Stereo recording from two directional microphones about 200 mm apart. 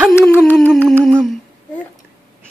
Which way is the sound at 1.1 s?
5° left (ahead or behind).